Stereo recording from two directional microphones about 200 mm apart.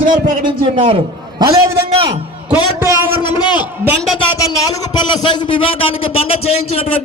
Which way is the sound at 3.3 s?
20° left (ahead or behind).